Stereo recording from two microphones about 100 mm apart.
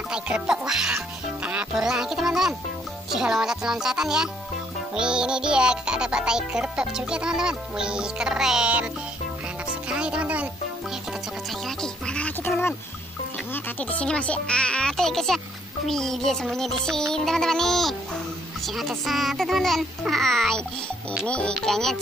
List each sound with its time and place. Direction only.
0.1 s a child's voice: 10° right (ahead or behind)
0.9 s music: 15° right (ahead or behind)
3.1 s a child's voice: 5° right (ahead or behind)
9.8 s music: 10° right (ahead or behind)
11.6 s music: 10° left (ahead or behind)
12.4 s a sound: 25° left (ahead or behind)
13.5 s speech: 15° left (ahead or behind)
15.9 s music: 5° left (ahead or behind)
21.3 s speech: 10° left (ahead or behind)